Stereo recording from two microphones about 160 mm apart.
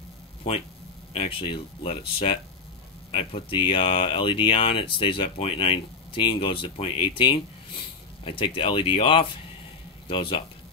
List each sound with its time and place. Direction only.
1.1 s speech: 35° left (ahead or behind)